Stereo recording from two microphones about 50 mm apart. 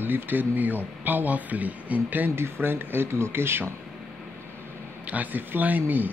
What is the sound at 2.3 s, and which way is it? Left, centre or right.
Speech, right.